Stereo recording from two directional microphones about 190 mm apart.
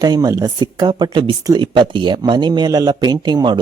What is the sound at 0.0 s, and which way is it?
Speech, 20° right (ahead or behind).